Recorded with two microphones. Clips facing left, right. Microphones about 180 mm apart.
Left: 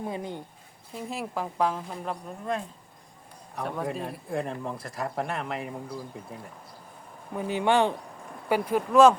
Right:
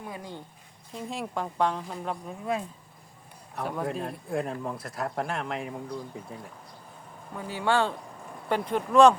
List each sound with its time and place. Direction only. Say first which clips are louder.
0.0 s speech: left 6 dB; 20° left (ahead or behind)
0.9 s speech: even; 5° left (ahead or behind)
7.3 s speech: left 3 dB; 20° left (ahead or behind)
8.4 s speech: left 2 dB; 5° left (ahead or behind)